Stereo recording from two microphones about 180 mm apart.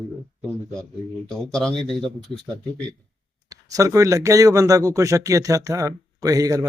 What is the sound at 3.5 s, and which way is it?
Speech, 20° right (ahead or behind).